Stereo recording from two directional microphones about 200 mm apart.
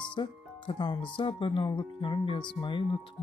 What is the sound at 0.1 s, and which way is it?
Speech, 25° left (ahead or behind).